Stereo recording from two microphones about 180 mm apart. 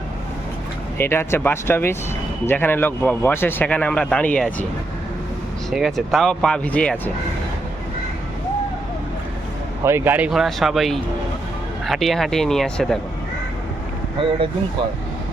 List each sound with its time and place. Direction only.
0.9 s a man's voice: 10° left (ahead or behind)
5.7 s speech: centre (ahead or behind)
9.8 s speech: 15° right (ahead or behind); by 13.0 s 5° left (ahead or behind)
14.2 s speech: 30° right (ahead or behind)